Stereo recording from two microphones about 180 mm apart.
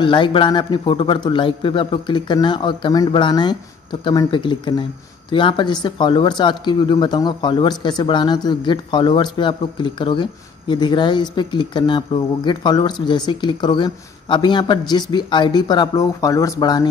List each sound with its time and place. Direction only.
0.0 s speech: 25° left (ahead or behind)